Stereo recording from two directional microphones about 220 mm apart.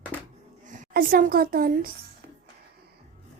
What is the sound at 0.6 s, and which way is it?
A woman's voice, 40° right (ahead or behind).